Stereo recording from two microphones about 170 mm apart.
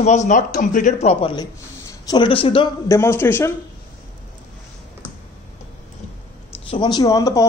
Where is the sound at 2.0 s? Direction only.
30° left (ahead or behind).